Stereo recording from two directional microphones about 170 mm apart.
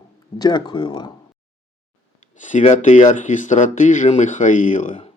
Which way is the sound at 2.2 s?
45° left (ahead or behind).